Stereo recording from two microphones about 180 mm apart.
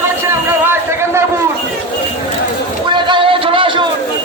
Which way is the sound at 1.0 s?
15° right (ahead or behind).